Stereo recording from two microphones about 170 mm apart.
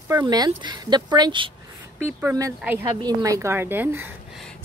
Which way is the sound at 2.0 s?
15° right (ahead or behind).